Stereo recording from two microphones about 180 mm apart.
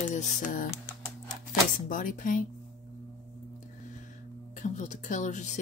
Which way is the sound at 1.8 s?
50° left (ahead or behind).